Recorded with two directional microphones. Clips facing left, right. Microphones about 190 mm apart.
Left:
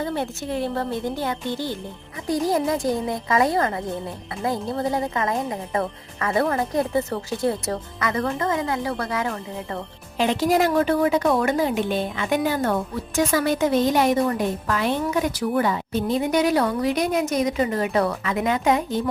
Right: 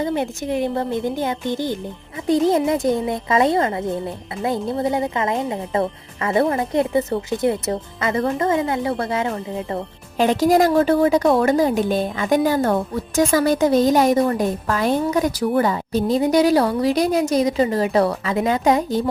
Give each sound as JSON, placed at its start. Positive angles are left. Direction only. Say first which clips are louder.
{"t": 0.0, "sound": "speech", "louder": "right 4 dB", "side_deg": -15}
{"t": 10.2, "sound": "a woman's voice", "louder": "right 4 dB", "side_deg": -45}